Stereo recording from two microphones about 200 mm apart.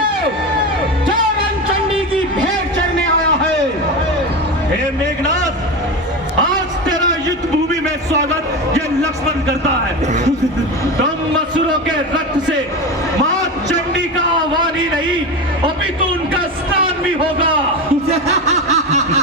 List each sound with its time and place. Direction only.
18.3 s snicker: 35° right (ahead or behind)